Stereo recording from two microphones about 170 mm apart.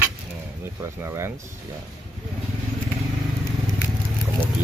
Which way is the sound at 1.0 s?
15° right (ahead or behind).